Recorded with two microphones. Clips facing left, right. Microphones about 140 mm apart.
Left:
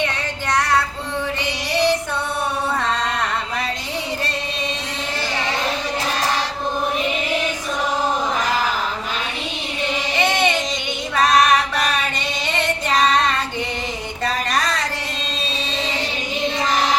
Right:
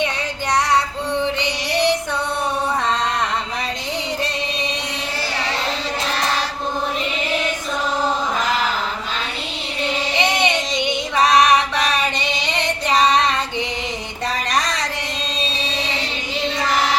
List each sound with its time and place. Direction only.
10.2 s child singing: 15° right (ahead or behind)